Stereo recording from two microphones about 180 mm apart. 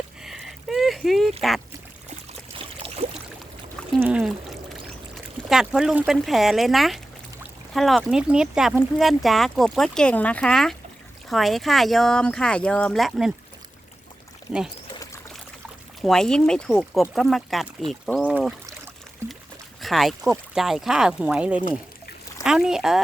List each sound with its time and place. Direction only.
0.2 s a sound: centre (ahead or behind)
1.4 s speech: centre (ahead or behind)
2.6 s pour: 30° right (ahead or behind)
4.0 s pour: 5° right (ahead or behind)
7.7 s speech: centre (ahead or behind)
16.0 s speech: centre (ahead or behind)
19.8 s speech: centre (ahead or behind)